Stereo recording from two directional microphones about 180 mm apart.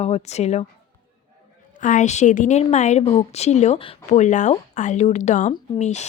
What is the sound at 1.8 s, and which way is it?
A woman's voice, 45° left (ahead or behind).